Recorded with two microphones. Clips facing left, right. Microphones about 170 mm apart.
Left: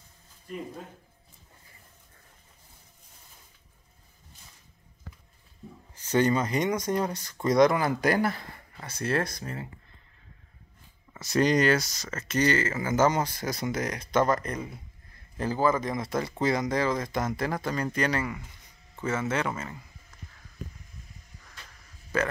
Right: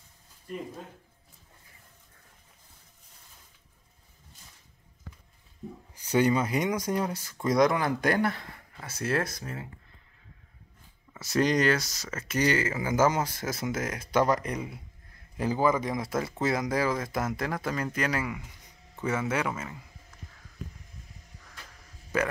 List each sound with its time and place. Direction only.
5.6 s a sound: 15° right (ahead or behind)
5.9 s speech: 10° right (ahead or behind)
11.1 s speech: 5° right (ahead or behind)
22.1 s speech: 15° right (ahead or behind)